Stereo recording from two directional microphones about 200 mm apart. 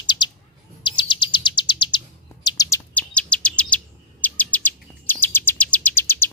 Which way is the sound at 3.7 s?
10° left (ahead or behind).